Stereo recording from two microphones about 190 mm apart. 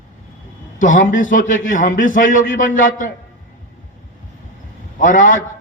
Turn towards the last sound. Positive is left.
turn(degrees=45)  # may be behind; listen again after turning